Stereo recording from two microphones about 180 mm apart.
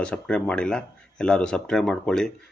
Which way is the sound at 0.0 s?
5° left (ahead or behind).